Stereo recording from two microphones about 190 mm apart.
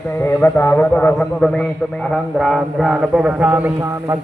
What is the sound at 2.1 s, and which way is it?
Mantra, centre (ahead or behind).